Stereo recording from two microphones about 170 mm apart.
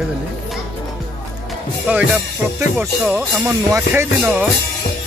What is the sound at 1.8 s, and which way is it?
Music, 5° right (ahead or behind).